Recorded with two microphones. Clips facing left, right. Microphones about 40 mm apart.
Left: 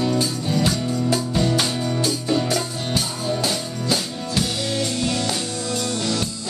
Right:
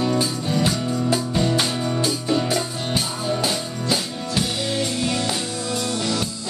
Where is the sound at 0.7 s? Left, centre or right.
Right.